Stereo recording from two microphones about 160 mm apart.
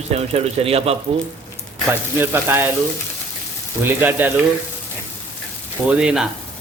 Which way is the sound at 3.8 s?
15° right (ahead or behind).